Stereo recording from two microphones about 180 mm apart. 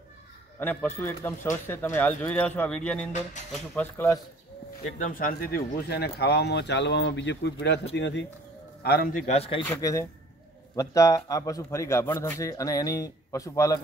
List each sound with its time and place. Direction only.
0.6 s a man's voice: 10° left (ahead or behind)
4.8 s speech: 45° left (ahead or behind); by 8.3 s 75° left (ahead or behind)
8.8 s a man's voice: 55° left (ahead or behind); by 9.7 s 30° left (ahead or behind)
9.8 s a man's voice: 20° left (ahead or behind)